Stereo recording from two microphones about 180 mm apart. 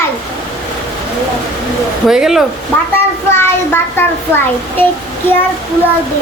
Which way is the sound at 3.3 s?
15° left (ahead or behind).